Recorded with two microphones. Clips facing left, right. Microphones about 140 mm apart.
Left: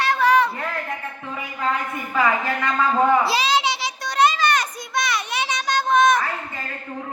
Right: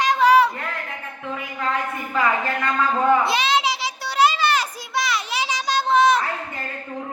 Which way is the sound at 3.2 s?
Centre (ahead or behind).